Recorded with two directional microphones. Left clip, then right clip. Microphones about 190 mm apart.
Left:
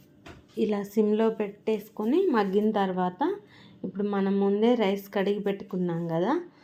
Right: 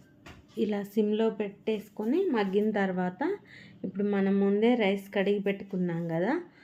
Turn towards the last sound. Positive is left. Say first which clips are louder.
# left 3 dB
turn(degrees=10)  # may be behind; listen again after turning